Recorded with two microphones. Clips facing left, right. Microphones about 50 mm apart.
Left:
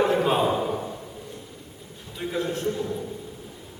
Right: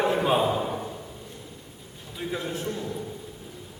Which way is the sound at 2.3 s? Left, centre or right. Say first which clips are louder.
Left 4 dB; centre.